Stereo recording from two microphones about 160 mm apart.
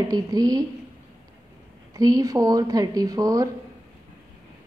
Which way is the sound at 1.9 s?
20° right (ahead or behind).